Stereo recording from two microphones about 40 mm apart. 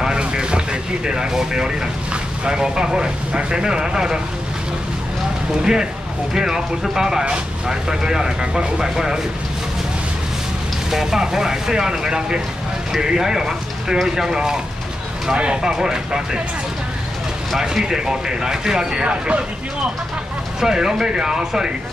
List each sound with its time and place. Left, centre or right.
0.0 s vehicle: centre
2.4 s speech: centre
5.6 s speech: centre
10.9 s speech: centre
15.3 s speech: right
15.6 s speech: centre
17.6 s speech: centre
19.0 s speech: right
20.6 s speech: centre